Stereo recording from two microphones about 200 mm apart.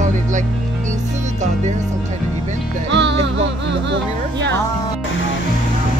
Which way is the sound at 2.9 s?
65° right (ahead or behind).